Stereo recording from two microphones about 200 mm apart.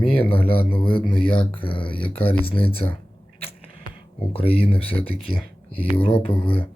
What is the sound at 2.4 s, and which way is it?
Speech, 30° left (ahead or behind).